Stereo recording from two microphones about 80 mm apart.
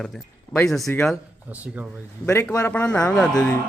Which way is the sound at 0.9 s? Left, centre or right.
Left.